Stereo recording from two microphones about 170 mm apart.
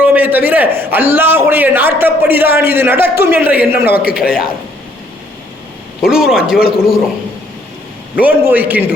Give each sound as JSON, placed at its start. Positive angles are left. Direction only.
{"t": 0.0, "sound": "a man's voice", "side_deg": -10}
{"t": 3.8, "sound": "a man's voice", "side_deg": 65}
{"t": 4.1, "sound": "a man's voice", "side_deg": -5}
{"t": 6.0, "sound": "a man's voice", "side_deg": -5}
{"t": 8.1, "sound": "a man's voice", "side_deg": -10}